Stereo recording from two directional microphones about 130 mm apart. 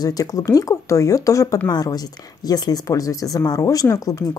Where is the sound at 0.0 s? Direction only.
30° left (ahead or behind).